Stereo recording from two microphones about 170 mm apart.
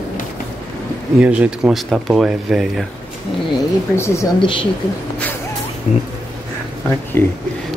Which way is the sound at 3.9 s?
15° left (ahead or behind).